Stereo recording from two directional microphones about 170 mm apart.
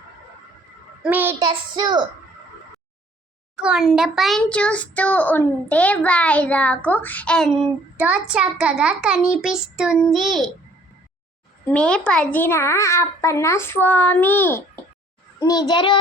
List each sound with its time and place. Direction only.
1.0 s a child's voice: 10° right (ahead or behind)
1.5 s a child's voice: 25° right (ahead or behind)
3.5 s a child's voice: 5° right (ahead or behind)
8.0 s child singing: 5° right (ahead or behind)
11.7 s a child's voice: 5° left (ahead or behind)
15.4 s a child's voice: 25° left (ahead or behind)